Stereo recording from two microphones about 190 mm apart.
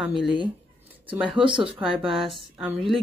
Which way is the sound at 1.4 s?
25° right (ahead or behind).